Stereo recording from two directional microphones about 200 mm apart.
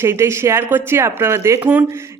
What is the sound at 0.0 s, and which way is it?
A man's voice, 15° right (ahead or behind).